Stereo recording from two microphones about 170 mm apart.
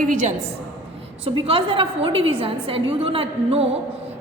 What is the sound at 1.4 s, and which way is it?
A woman's voice, 35° right (ahead or behind).